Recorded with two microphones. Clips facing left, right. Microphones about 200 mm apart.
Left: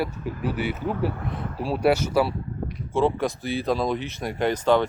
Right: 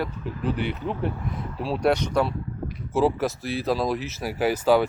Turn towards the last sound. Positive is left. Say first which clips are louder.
# right 1 dB
turn(degrees=-5)  # may be behind; listen again after turning